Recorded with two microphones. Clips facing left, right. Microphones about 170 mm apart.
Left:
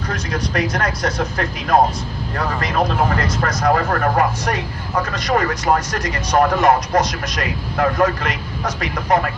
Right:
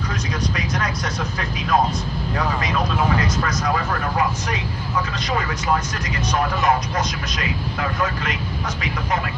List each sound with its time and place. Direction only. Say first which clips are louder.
0.1 s speech: left 5 dB; 55° left (ahead or behind)
5.9 s speech: left 5 dB; 65° left (ahead or behind)